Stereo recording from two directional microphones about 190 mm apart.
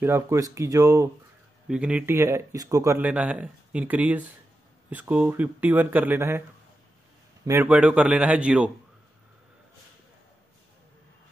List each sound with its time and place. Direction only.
0.0 s speech: 15° right (ahead or behind)
1.7 s speech: 5° right (ahead or behind)
7.4 s speech: 10° right (ahead or behind)